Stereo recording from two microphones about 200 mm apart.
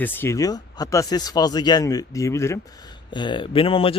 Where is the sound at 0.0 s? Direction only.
10° left (ahead or behind).